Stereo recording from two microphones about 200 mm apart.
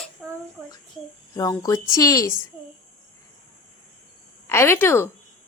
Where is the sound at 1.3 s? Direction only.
15° left (ahead or behind).